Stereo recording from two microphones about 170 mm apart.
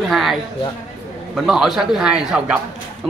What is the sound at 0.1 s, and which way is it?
Speech, centre (ahead or behind).